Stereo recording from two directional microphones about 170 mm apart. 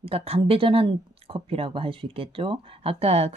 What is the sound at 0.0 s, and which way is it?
Speech, 35° right (ahead or behind).